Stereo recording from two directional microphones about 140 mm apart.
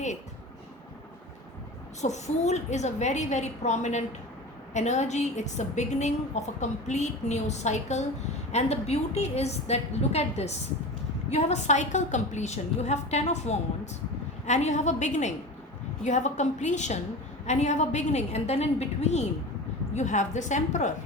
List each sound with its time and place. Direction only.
2.0 s a woman's voice: 55° left (ahead or behind)